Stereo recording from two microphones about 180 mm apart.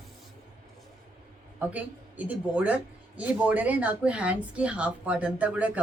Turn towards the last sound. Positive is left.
turn(degrees=-10)  # may be behind; listen again after turning